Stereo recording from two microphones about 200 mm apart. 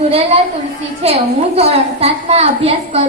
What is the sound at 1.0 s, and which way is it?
A woman's voice, 30° right (ahead or behind).